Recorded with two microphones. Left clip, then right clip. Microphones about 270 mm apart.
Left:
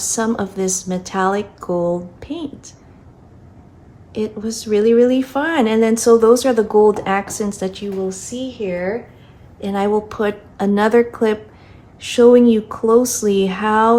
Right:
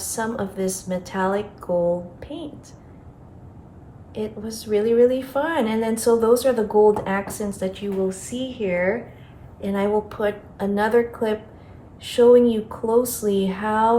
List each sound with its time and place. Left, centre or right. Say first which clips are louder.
0.0 s speech: left 6 dB; left
4.1 s speech: left 6 dB; left
9.6 s speech: left 4 dB; left